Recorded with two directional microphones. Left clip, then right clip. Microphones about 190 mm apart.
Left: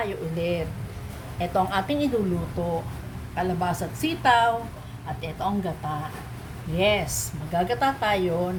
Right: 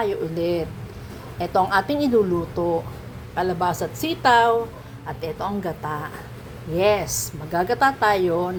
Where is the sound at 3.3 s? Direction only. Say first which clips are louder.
Right 4 dB; 20° right (ahead or behind).